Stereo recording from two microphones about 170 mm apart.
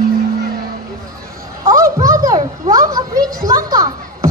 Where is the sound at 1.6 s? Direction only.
20° right (ahead or behind).